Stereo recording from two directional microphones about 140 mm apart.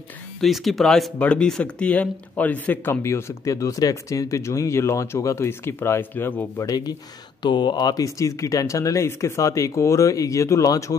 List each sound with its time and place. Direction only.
0.4 s speech: centre (ahead or behind); by 11.0 s 25° left (ahead or behind)